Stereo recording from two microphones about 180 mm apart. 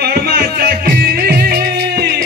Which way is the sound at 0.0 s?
60° right (ahead or behind).